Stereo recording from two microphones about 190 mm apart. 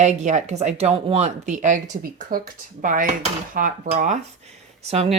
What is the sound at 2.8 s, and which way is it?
Speech, 45° right (ahead or behind).